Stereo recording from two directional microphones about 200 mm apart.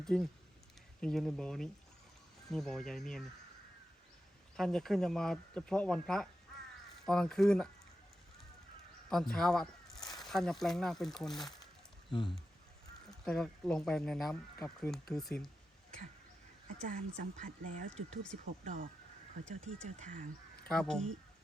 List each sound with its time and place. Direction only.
0.0 s speech: centre (ahead or behind)
4.5 s speech: centre (ahead or behind)
9.0 s speech: 5° left (ahead or behind)
13.1 s speech: centre (ahead or behind)
16.9 s speech: 40° right (ahead or behind)
20.7 s speech: 5° left (ahead or behind)